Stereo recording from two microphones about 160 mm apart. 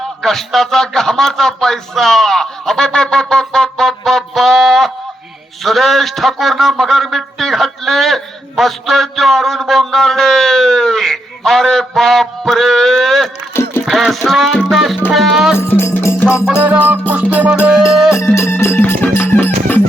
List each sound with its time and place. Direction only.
0.2 s a man's voice: centre (ahead or behind)
13.5 s music: 15° left (ahead or behind)
13.8 s music: centre (ahead or behind)
15.1 s a man's voice: centre (ahead or behind)
15.5 s music: 15° left (ahead or behind)
16.5 s music: 10° right (ahead or behind)
18.2 s music: 15° left (ahead or behind)